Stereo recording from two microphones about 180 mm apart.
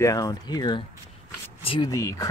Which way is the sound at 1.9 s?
15° left (ahead or behind).